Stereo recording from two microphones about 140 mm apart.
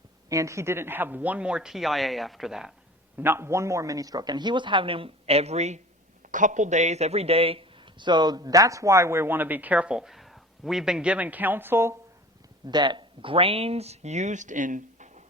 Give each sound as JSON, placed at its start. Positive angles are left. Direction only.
{"t": 0.3, "sound": "speech", "side_deg": -20}
{"t": 3.2, "sound": "a man's voice", "side_deg": -15}
{"t": 6.2, "sound": "speech", "side_deg": -65}
{"t": 12.6, "sound": "speech", "side_deg": -30}